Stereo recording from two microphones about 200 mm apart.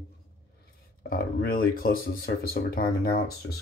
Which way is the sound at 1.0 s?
50° left (ahead or behind).